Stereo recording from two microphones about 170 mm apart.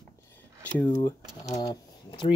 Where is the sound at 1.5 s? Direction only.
20° left (ahead or behind).